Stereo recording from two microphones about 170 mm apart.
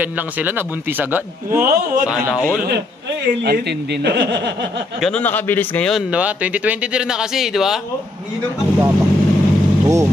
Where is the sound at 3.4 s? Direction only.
75° right (ahead or behind); by 4.5 s 90° right.